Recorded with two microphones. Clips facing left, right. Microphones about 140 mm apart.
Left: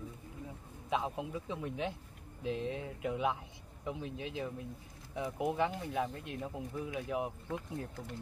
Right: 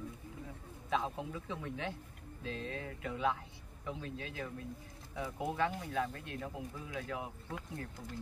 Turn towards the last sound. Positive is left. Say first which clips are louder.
# left 5 dB
turn(degrees=20)  # may be behind; listen again after turning